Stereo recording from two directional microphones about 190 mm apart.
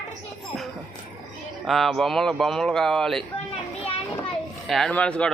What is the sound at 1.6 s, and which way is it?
Speech, centre (ahead or behind).